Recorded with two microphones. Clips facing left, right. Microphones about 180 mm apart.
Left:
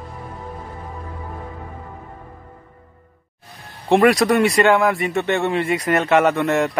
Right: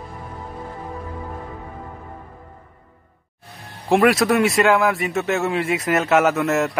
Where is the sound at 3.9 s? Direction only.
5° right (ahead or behind).